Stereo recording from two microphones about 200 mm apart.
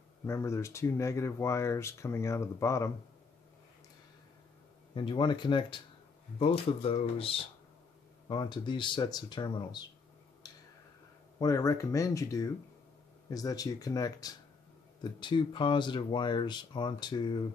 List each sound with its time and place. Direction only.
0.3 s speech: 15° left (ahead or behind)
4.9 s speech: 25° left (ahead or behind)
11.3 s speech: 15° left (ahead or behind)